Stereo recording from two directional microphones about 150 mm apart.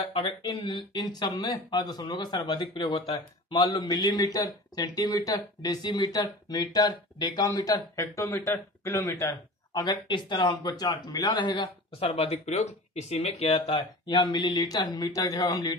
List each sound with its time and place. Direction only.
0.0 s a man's voice: 30° left (ahead or behind); by 13.6 s 45° left (ahead or behind)
13.6 s a man's voice: 30° left (ahead or behind)